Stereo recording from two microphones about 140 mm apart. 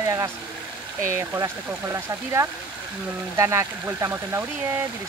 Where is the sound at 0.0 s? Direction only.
25° right (ahead or behind).